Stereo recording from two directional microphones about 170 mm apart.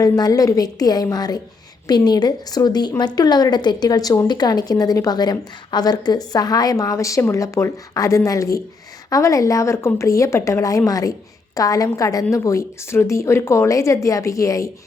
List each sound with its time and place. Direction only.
0.0 s a woman's voice: 20° left (ahead or behind)